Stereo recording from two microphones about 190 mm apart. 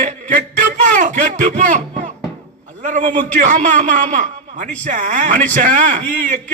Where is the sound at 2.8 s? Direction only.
40° right (ahead or behind).